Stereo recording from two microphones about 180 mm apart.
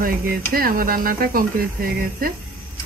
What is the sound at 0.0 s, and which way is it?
Speech, 55° right (ahead or behind).